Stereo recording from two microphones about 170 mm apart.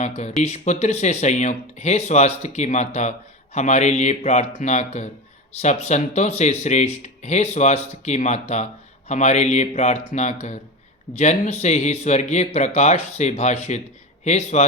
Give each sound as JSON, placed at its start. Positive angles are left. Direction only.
{"t": 0.0, "sound": "speech", "side_deg": 40}